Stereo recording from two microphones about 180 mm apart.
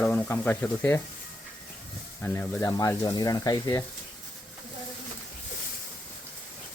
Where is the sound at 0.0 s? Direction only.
10° left (ahead or behind).